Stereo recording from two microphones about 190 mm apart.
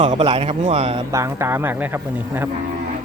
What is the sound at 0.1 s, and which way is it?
Speech, 30° right (ahead or behind).